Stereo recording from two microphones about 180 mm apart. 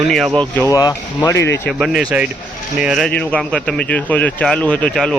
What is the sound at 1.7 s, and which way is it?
Speech, centre (ahead or behind).